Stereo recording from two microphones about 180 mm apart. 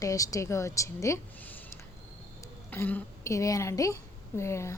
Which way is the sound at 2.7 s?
10° left (ahead or behind).